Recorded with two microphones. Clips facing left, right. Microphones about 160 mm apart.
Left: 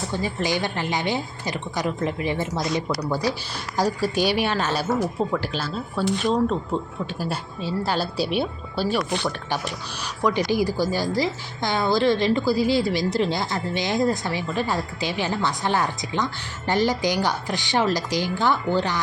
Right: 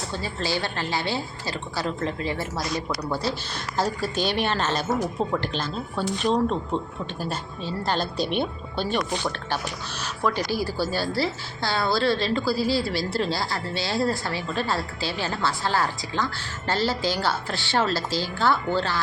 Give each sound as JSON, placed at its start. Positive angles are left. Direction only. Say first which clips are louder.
{"t": 0.1, "sound": "a woman's voice", "louder": "left 3 dB", "side_deg": 15}
{"t": 10.2, "sound": "a woman's voice", "louder": "left 4 dB", "side_deg": 15}